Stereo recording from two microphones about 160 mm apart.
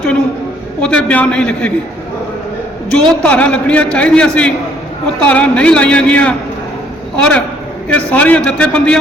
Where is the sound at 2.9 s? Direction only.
5° left (ahead or behind).